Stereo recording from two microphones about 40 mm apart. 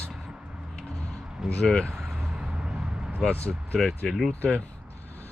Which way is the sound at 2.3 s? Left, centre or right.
Right.